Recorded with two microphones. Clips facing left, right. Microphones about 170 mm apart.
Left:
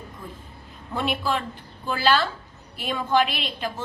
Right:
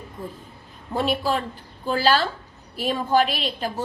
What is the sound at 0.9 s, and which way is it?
A woman's voice, 40° right (ahead or behind).